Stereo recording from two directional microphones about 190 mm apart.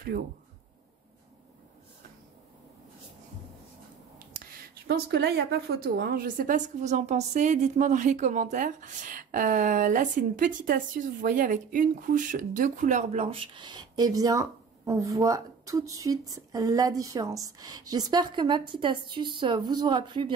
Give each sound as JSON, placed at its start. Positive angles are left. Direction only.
{"t": 0.1, "sound": "speech", "side_deg": -45}
{"t": 4.6, "sound": "a woman's voice", "side_deg": -55}